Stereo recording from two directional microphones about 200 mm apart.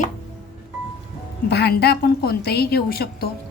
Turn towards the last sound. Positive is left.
turn(degrees=50)  # may be behind; listen again after turning